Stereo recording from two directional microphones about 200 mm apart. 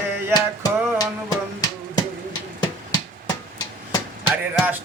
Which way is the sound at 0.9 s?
20° left (ahead or behind).